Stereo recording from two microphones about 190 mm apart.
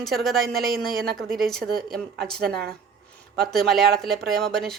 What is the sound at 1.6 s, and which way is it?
Speech, 50° right (ahead or behind).